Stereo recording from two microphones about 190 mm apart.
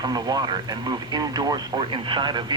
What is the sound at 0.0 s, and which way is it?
Speech, 20° right (ahead or behind).